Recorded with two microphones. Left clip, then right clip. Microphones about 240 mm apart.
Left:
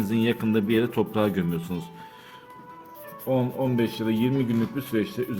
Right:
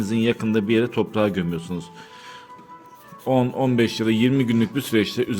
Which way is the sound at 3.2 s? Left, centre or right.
Right.